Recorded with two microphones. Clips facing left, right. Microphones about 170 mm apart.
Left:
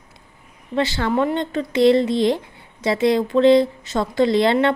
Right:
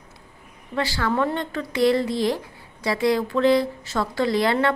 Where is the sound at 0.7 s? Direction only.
25° left (ahead or behind).